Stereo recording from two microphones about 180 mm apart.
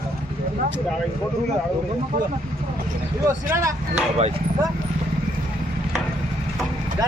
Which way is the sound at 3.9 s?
35° right (ahead or behind).